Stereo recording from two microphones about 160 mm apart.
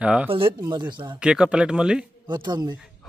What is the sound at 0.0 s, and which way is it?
Speech, 5° right (ahead or behind).